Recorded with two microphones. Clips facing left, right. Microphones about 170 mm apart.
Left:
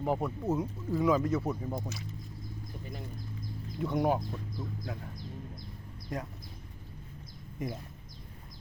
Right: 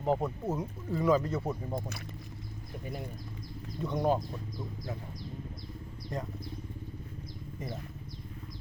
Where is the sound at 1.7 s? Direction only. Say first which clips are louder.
Right 1 dB; 60° right (ahead or behind).